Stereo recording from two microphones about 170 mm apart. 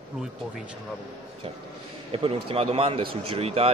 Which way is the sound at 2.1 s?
35° right (ahead or behind).